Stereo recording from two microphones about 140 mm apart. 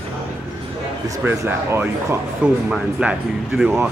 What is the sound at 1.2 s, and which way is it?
A man's voice, 15° right (ahead or behind).